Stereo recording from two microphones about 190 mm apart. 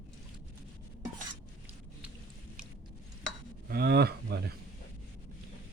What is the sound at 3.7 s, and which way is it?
Speech, 60° right (ahead or behind).